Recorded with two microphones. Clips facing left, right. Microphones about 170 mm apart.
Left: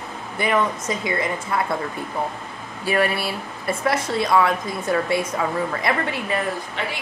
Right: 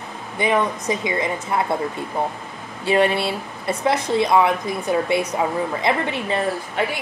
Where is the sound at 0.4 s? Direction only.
20° right (ahead or behind).